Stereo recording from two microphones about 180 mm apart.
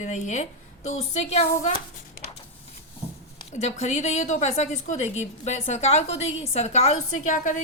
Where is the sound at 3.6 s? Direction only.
40° left (ahead or behind).